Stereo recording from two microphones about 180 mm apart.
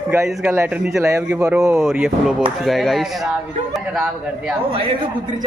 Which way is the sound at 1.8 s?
5° right (ahead or behind).